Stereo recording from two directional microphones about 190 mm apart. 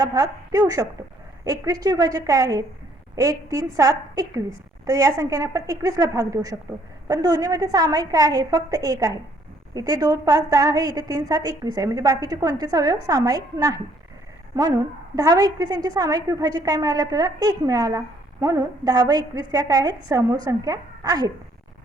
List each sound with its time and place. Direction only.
0.0 s a woman's voice: 20° right (ahead or behind)